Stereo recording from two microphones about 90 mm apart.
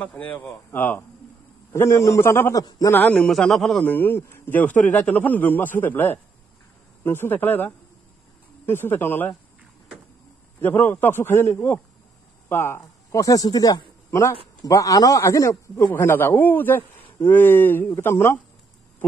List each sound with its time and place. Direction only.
0.0 s a man's voice: 15° left (ahead or behind)
2.5 s a man's voice: 40° left (ahead or behind)
2.9 s a man's voice: 20° left (ahead or behind)
3.3 s a man's voice: 5° left (ahead or behind)
3.8 s a man's voice: 20° left (ahead or behind)
10.6 s a man's voice: 20° left (ahead or behind)